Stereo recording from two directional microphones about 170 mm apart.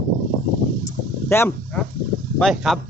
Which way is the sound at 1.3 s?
15° left (ahead or behind).